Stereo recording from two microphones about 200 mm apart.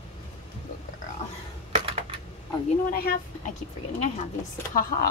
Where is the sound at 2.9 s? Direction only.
50° left (ahead or behind).